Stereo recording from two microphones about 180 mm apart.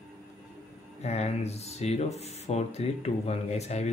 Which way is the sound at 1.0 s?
35° left (ahead or behind).